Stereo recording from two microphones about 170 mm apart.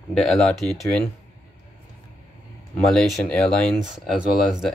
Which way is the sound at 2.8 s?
5° left (ahead or behind).